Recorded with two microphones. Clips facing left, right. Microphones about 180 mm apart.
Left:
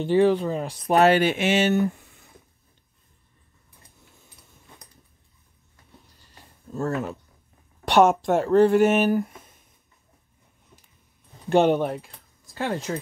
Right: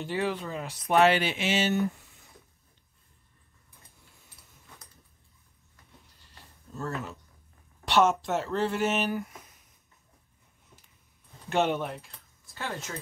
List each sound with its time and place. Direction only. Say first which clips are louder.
0.0 s speech: left 11 dB; 30° left (ahead or behind); by 1.8 s 55° left (ahead or behind)
6.7 s speech: left 8 dB; 50° left (ahead or behind)
9.2 s a sound: left 8 dB; 30° left (ahead or behind)
11.4 s speech: left 8 dB; 35° left (ahead or behind)